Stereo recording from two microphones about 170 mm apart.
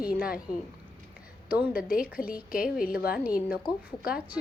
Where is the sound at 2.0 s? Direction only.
10° right (ahead or behind).